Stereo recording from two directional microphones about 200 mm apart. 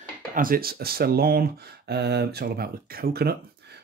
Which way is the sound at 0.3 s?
45° right (ahead or behind).